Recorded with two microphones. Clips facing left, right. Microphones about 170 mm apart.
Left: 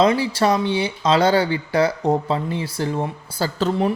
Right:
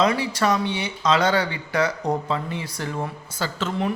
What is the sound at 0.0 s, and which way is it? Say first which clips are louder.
Speech: left 4 dB; 30° left (ahead or behind).